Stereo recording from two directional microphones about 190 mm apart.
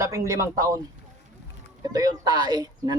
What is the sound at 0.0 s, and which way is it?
Speech, 15° right (ahead or behind).